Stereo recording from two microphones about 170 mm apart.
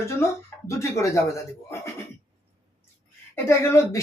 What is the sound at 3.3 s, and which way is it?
Speech, 15° left (ahead or behind).